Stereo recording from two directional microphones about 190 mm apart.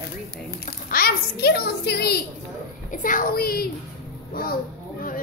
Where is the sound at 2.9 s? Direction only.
45° left (ahead or behind).